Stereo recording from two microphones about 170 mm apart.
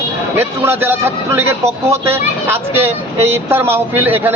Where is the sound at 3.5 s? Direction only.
15° right (ahead or behind).